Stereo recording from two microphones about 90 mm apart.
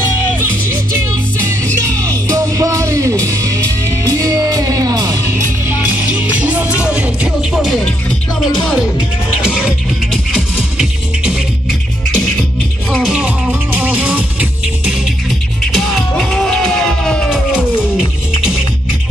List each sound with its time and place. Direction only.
2.0 s music: 40° right (ahead or behind)
5.7 s music: 20° right (ahead or behind)
7.5 s music: centre (ahead or behind)
9.4 s music: 10° right (ahead or behind)
13.5 s music: 15° right (ahead or behind)
15.6 s music: 5° left (ahead or behind)